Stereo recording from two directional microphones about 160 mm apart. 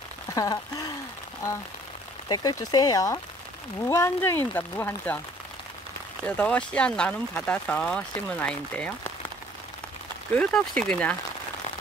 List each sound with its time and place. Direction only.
0.3 s a sound: 20° left (ahead or behind)
2.2 s speech: 25° left (ahead or behind)
6.2 s speech: 10° left (ahead or behind)
10.3 s speech: 5° left (ahead or behind)